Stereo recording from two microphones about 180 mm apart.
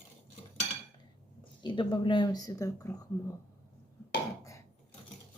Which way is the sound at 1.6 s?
25° left (ahead or behind).